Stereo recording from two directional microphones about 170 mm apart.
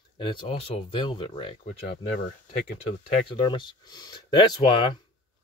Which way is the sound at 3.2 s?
30° left (ahead or behind).